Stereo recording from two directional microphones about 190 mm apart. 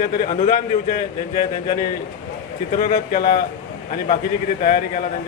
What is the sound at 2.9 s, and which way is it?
Speech, 45° left (ahead or behind).